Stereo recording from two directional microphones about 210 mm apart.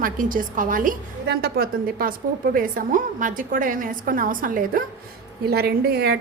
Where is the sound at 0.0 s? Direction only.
40° right (ahead or behind).